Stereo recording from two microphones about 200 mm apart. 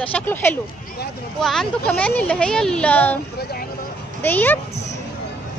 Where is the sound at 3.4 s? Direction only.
50° left (ahead or behind).